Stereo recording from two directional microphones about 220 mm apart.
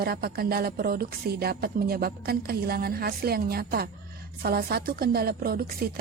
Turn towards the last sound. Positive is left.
turn(degrees=-45)  # may be behind; listen again after turning